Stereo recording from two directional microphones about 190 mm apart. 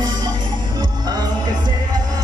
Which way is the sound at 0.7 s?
20° right (ahead or behind).